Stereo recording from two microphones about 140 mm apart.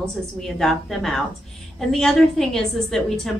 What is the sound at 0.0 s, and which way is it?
A woman's voice, 5° left (ahead or behind).